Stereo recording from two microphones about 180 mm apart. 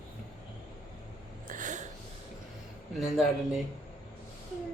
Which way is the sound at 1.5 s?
45° right (ahead or behind).